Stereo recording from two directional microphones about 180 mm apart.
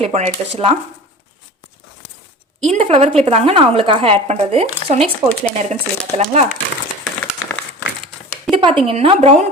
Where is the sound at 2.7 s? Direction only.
35° right (ahead or behind).